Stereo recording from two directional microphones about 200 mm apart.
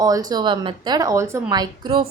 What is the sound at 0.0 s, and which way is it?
A woman's voice, 20° right (ahead or behind).